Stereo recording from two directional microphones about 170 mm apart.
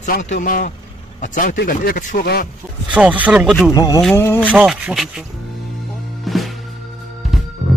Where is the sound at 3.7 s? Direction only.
20° left (ahead or behind).